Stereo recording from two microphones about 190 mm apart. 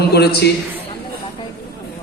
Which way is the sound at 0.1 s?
60° left (ahead or behind).